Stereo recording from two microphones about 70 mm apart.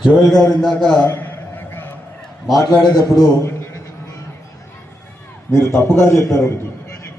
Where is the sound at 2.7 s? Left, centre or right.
Left.